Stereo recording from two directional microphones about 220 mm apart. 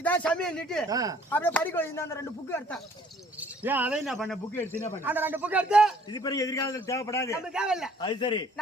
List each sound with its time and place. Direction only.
0.0 s speech: 5° left (ahead or behind)
0.9 s a man's voice: 15° right (ahead or behind)
1.3 s speech: 10° left (ahead or behind)
3.6 s a man's voice: 10° right (ahead or behind)
6.1 s speech: 15° left (ahead or behind)
7.5 s speech: 5° right (ahead or behind)
8.0 s a man's voice: 20° left (ahead or behind)